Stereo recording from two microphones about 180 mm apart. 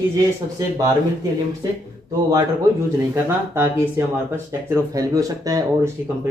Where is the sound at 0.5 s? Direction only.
20° right (ahead or behind).